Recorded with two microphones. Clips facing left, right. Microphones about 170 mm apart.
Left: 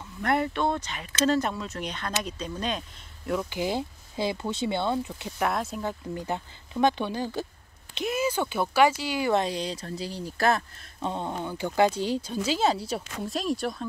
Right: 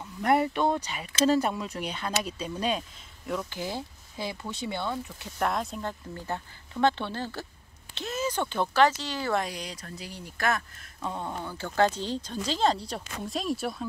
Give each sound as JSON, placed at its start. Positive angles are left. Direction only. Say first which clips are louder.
{"t": 0.2, "sound": "speech", "louder": "right 2 dB", "side_deg": -10}
{"t": 3.3, "sound": "speech", "louder": "left 5 dB", "side_deg": 10}
{"t": 5.4, "sound": "speech", "louder": "left 1 dB", "side_deg": 5}
{"t": 9.3, "sound": "speech", "louder": "left 4 dB", "side_deg": 25}